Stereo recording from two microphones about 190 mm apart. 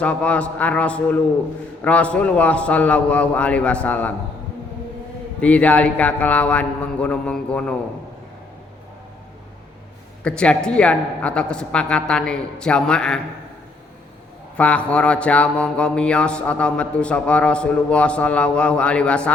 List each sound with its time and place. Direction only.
0.0 s a man's voice: 5° left (ahead or behind)
5.4 s a man's voice: 5° left (ahead or behind)
10.2 s mantra: 5° left (ahead or behind)
14.5 s mantra: 5° left (ahead or behind)